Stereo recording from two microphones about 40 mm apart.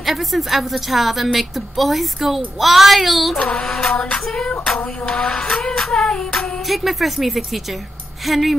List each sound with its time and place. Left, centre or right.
0.0 s a woman's voice: centre
3.3 s a sound: left
3.6 s music: centre
4.5 s a sound: left
5.9 s music: centre
6.7 s a woman's voice: centre